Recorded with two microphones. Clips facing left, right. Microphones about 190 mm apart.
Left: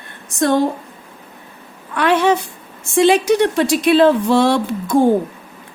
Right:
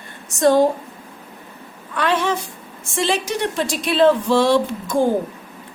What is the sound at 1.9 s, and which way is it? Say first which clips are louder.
A woman's voice: left 5 dB; 60° left (ahead or behind).